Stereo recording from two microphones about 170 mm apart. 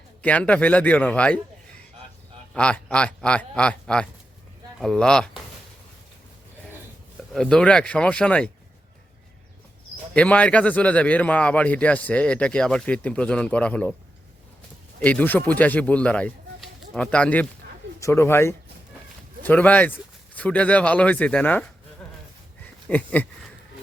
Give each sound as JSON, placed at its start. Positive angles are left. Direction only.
{"t": 0.2, "sound": "a man's voice", "side_deg": 10}
{"t": 2.6, "sound": "a man's voice", "side_deg": 5}
{"t": 7.3, "sound": "speech", "side_deg": 5}
{"t": 10.2, "sound": "a man's voice", "side_deg": 10}
{"t": 15.0, "sound": "a man's voice", "side_deg": 10}
{"t": 22.9, "sound": "a sound", "side_deg": 10}